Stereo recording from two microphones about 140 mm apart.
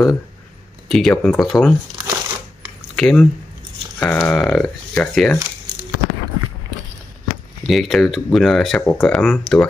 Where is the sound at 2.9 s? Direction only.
5° left (ahead or behind).